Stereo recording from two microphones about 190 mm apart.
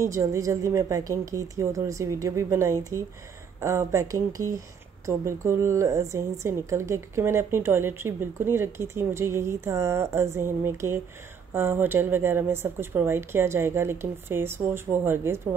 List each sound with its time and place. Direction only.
0.0 s a woman's voice: 15° right (ahead or behind)